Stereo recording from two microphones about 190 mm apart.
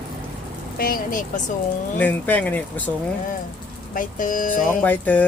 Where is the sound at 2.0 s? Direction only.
10° left (ahead or behind).